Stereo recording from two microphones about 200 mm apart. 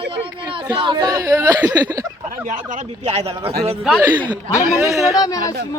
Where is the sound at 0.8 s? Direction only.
25° right (ahead or behind).